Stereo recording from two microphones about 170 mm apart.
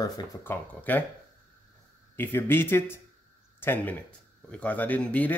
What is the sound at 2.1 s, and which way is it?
Speech, 10° left (ahead or behind).